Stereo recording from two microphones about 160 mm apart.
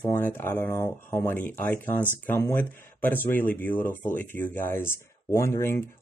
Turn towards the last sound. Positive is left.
turn(degrees=15)  # may be behind; listen again after turning